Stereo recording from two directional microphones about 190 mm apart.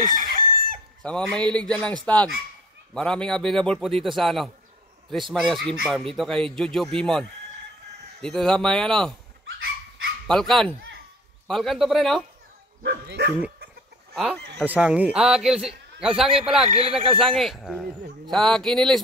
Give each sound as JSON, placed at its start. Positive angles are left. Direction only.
{"t": 0.0, "sound": "chicken", "side_deg": -45}
{"t": 1.0, "sound": "speech", "side_deg": 5}
{"t": 10.2, "sound": "speech", "side_deg": 5}
{"t": 12.8, "sound": "speech", "side_deg": -60}
{"t": 14.1, "sound": "speech", "side_deg": 0}